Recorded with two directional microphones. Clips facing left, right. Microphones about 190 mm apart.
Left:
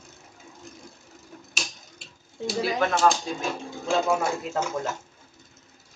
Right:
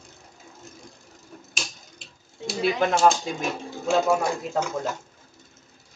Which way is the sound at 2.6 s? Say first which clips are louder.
Right 2 dB; 20° right (ahead or behind).